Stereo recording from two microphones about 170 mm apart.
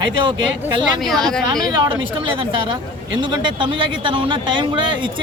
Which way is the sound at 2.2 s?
30° right (ahead or behind).